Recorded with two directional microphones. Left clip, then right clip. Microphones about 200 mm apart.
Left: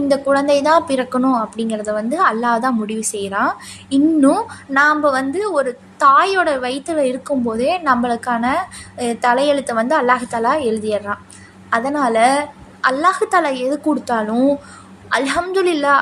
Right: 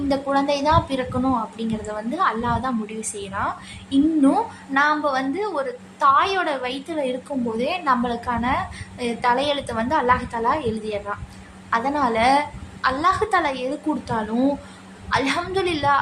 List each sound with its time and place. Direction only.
0.1 s a woman's voice: 25° left (ahead or behind)